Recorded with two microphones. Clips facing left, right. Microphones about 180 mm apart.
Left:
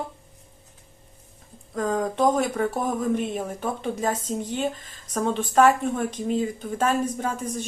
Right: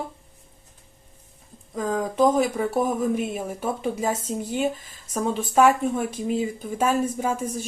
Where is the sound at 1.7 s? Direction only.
Centre (ahead or behind).